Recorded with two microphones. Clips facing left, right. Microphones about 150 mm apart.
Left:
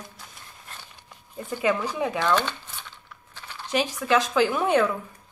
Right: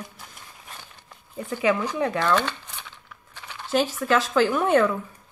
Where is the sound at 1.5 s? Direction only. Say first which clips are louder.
Right 2 dB; 5° left (ahead or behind).